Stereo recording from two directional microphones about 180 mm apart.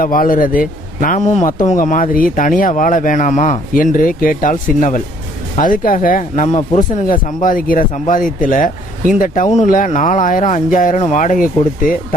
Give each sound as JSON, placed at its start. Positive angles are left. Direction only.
{"t": 0.0, "sound": "speech", "side_deg": 50}